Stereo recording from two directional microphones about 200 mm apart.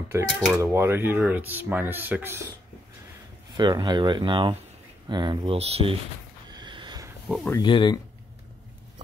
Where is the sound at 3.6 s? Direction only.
20° right (ahead or behind).